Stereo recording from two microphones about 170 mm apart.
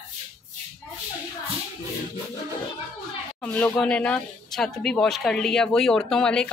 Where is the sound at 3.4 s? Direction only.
5° left (ahead or behind).